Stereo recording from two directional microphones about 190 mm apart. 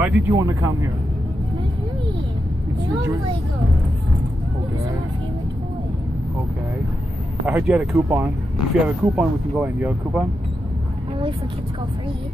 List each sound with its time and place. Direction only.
0.0 s speech: 15° right (ahead or behind)
7.4 s speech: 10° right (ahead or behind)